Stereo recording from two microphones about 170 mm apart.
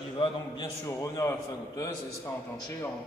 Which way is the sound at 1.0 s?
15° left (ahead or behind).